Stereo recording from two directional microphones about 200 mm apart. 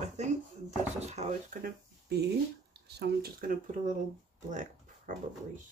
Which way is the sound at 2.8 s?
55° right (ahead or behind).